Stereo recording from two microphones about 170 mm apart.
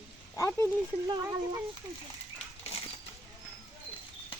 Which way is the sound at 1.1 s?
20° right (ahead or behind).